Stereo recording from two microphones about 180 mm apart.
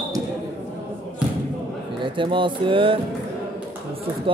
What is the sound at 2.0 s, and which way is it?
Speech, 25° right (ahead or behind).